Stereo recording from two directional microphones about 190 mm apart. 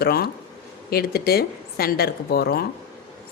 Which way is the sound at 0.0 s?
55° left (ahead or behind).